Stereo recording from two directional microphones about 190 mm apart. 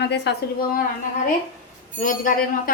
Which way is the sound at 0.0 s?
60° left (ahead or behind).